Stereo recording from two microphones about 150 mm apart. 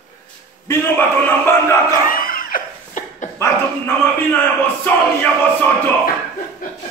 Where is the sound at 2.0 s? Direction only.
70° left (ahead or behind).